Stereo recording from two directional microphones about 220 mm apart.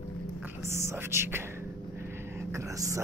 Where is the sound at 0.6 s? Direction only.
10° right (ahead or behind).